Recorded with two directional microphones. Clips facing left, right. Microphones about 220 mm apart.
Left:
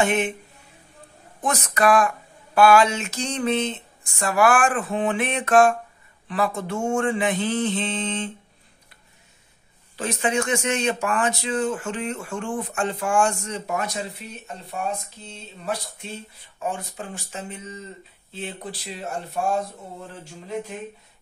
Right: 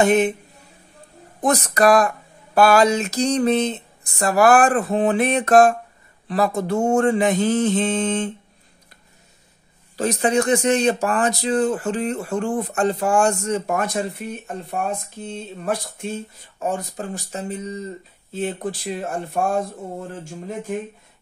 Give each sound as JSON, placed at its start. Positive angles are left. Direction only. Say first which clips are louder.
{"t": 0.0, "sound": "speech", "louder": "right 6 dB", "side_deg": -40}
{"t": 1.4, "sound": "speech", "louder": "right 5 dB", "side_deg": -35}
{"t": 9.9, "sound": "speech", "louder": "right 5 dB", "side_deg": -40}